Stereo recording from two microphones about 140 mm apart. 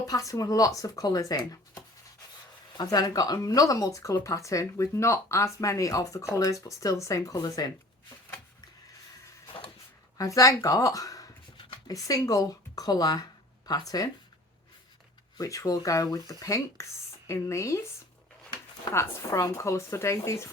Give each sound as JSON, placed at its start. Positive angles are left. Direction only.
{"t": 0.0, "sound": "speech", "side_deg": 25}
{"t": 10.2, "sound": "speech", "side_deg": 25}
{"t": 15.4, "sound": "speech", "side_deg": 25}
{"t": 18.9, "sound": "speech", "side_deg": 20}